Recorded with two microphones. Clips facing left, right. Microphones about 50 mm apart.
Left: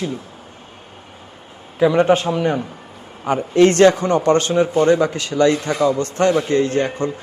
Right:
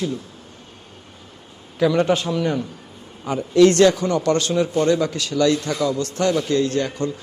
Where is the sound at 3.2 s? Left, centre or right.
Left.